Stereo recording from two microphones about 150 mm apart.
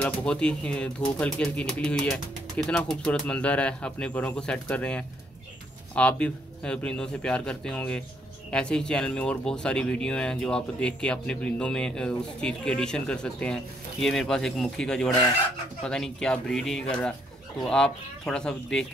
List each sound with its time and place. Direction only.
0.0 s speech: 5° left (ahead or behind)